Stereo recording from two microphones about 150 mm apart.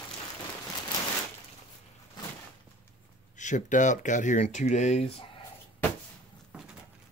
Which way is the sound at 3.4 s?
55° left (ahead or behind).